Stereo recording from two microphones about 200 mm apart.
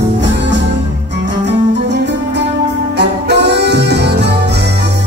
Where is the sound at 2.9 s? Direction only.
60° right (ahead or behind).